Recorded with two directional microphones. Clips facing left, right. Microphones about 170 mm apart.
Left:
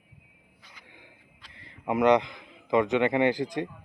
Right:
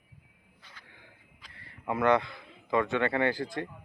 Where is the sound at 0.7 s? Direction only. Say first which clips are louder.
Left 2 dB; 15° left (ahead or behind).